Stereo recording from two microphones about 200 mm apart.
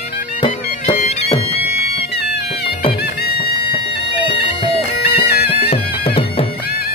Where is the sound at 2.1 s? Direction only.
55° left (ahead or behind).